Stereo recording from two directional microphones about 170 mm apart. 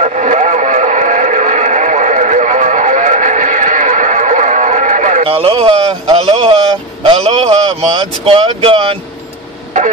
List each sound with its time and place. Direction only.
0.0 s radio: 45° right (ahead or behind)
5.2 s speech: 35° right (ahead or behind)
6.1 s a sound: 35° right (ahead or behind)
8.0 s speech: 35° right (ahead or behind)